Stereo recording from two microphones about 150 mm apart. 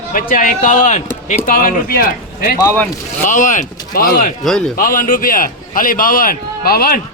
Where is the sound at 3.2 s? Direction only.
60° left (ahead or behind); by 4.3 s 75° left (ahead or behind).